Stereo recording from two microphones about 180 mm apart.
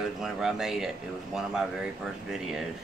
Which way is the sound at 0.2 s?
Centre (ahead or behind).